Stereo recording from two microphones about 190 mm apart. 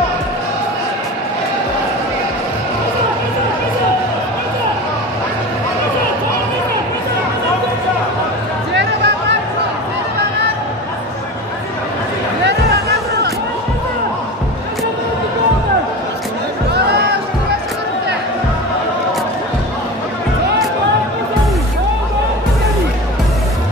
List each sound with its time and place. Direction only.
8.7 s music: 65° right (ahead or behind)